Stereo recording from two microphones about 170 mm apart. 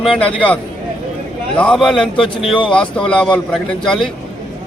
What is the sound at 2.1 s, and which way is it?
Speech, 30° left (ahead or behind).